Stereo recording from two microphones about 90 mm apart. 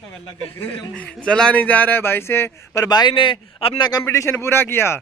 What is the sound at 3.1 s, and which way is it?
Speech, 70° left (ahead or behind).